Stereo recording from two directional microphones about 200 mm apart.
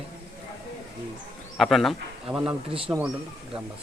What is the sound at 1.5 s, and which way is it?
Speech, centre (ahead or behind).